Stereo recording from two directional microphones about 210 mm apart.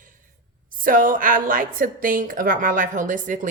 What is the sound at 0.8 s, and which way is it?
A woman's voice, 40° right (ahead or behind).